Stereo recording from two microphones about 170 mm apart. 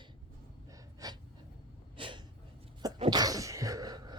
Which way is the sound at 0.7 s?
20° right (ahead or behind).